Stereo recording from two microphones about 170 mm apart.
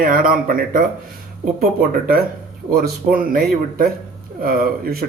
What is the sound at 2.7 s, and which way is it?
Speech, 55° right (ahead or behind).